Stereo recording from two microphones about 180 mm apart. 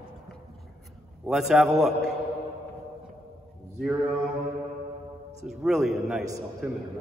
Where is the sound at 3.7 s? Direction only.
Centre (ahead or behind).